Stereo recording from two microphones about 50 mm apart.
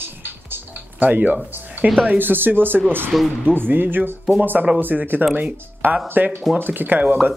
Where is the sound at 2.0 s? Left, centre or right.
Right.